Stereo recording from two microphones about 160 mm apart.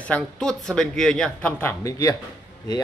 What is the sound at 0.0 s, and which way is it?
Speech, 5° left (ahead or behind).